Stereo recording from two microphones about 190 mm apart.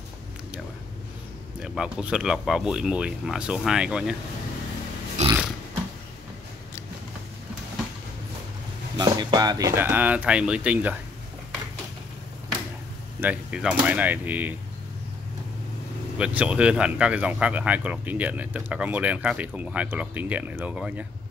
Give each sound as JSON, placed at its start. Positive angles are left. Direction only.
{"t": 1.6, "sound": "speech", "side_deg": -5}
{"t": 5.2, "sound": "a sound", "side_deg": -35}
{"t": 8.9, "sound": "speech", "side_deg": -20}
{"t": 13.2, "sound": "speech", "side_deg": -5}
{"t": 16.2, "sound": "speech", "side_deg": -5}